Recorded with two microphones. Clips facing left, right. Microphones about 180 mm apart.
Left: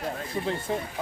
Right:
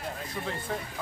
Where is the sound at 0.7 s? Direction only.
30° left (ahead or behind).